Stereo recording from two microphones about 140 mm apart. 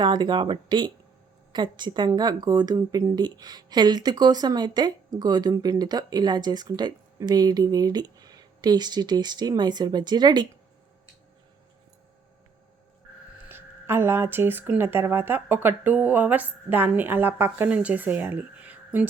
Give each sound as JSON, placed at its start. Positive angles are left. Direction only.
{"t": 0.0, "sound": "a woman's voice", "side_deg": -35}
{"t": 13.5, "sound": "speech", "side_deg": -15}